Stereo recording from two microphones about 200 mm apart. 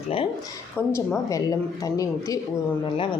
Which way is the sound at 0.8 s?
15° left (ahead or behind).